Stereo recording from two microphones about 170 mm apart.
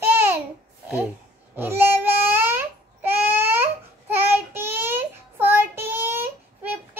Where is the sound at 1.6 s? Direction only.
15° right (ahead or behind).